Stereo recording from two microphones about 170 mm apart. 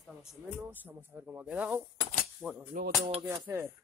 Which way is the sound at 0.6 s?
10° right (ahead or behind).